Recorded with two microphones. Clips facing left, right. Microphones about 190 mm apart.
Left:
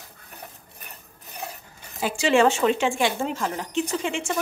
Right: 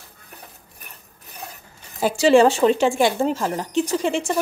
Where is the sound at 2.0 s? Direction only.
40° right (ahead or behind).